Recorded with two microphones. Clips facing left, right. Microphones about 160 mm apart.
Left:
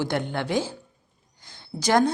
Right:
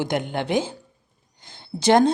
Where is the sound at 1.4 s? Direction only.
25° right (ahead or behind).